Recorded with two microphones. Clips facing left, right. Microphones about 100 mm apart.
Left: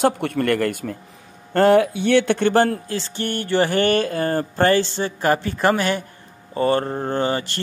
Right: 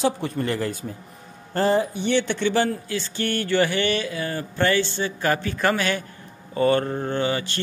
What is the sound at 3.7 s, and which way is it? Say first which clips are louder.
Speech: left 5 dB; 45° left (ahead or behind).